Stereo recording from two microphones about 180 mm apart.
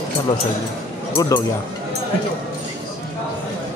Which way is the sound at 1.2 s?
20° left (ahead or behind).